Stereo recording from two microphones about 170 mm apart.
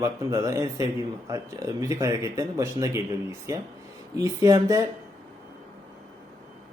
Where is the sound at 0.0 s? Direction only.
15° right (ahead or behind).